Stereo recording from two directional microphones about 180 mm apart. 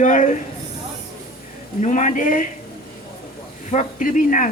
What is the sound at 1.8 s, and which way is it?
Speech, 45° left (ahead or behind).